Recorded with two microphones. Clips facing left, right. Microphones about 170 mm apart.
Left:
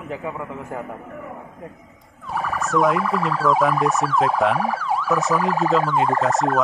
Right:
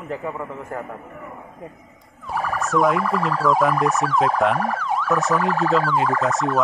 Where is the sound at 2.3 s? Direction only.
Centre (ahead or behind).